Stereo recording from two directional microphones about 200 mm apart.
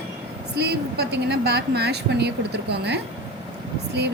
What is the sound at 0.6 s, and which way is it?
Speech, 55° right (ahead or behind).